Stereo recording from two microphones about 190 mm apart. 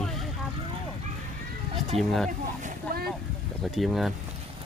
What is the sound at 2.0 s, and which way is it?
Speech, centre (ahead or behind).